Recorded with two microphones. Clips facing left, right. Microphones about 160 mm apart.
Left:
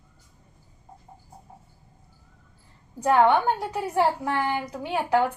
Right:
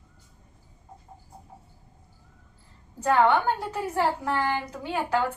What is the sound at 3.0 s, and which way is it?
A woman's voice, 15° left (ahead or behind).